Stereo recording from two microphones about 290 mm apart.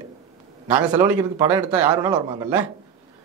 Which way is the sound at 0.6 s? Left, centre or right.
Centre.